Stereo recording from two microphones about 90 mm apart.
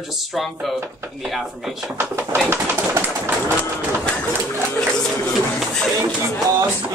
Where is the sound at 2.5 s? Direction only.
25° right (ahead or behind).